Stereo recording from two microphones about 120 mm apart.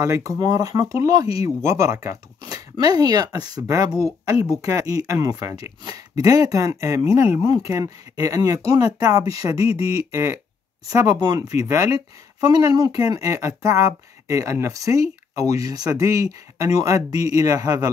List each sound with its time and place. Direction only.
0.0 s speech: 25° right (ahead or behind)